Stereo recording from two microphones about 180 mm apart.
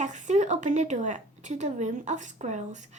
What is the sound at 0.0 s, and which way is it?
Speech, 45° right (ahead or behind).